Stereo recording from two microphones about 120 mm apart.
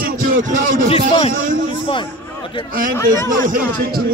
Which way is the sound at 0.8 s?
55° left (ahead or behind).